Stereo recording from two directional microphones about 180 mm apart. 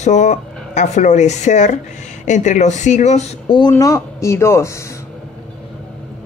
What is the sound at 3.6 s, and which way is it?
Speech, 20° left (ahead or behind).